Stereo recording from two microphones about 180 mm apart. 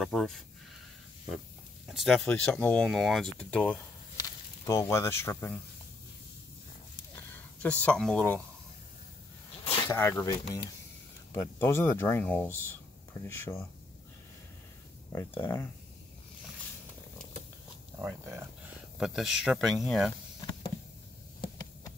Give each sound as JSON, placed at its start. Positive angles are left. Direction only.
{"t": 0.0, "sound": "speech", "side_deg": 0}
{"t": 1.9, "sound": "speech", "side_deg": 0}
{"t": 7.3, "sound": "speech", "side_deg": 5}
{"t": 9.8, "sound": "speech", "side_deg": 15}
{"t": 15.1, "sound": "speech", "side_deg": 15}
{"t": 17.9, "sound": "speech", "side_deg": -15}
{"t": 18.9, "sound": "speech", "side_deg": -5}
{"t": 21.4, "sound": "a sound", "side_deg": 20}